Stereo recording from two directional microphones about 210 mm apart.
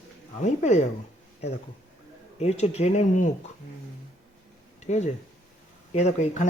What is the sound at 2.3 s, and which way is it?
Speech, 30° left (ahead or behind).